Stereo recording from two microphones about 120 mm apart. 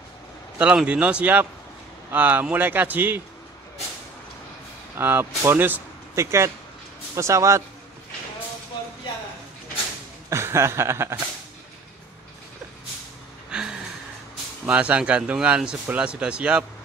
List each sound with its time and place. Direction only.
0.6 s speech: 10° right (ahead or behind)
4.9 s speech: 20° right (ahead or behind)
10.3 s chuckle: 20° right (ahead or behind)
13.5 s a sound: 5° right (ahead or behind)
14.7 s speech: 10° right (ahead or behind)